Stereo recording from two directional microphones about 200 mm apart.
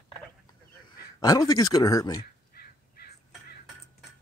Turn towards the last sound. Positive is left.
turn(degrees=50)  # may be behind; listen again after turning